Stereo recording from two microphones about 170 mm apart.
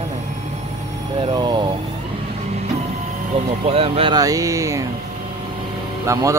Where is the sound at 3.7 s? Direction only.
35° right (ahead or behind); by 4.9 s 20° right (ahead or behind).